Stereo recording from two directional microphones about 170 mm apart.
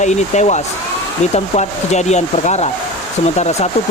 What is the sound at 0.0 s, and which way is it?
Speech, 45° left (ahead or behind).